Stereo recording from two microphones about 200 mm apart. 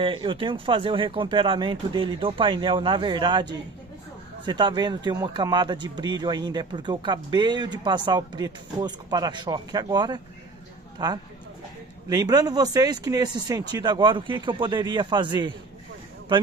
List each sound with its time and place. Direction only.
0.0 s speech: 25° right (ahead or behind)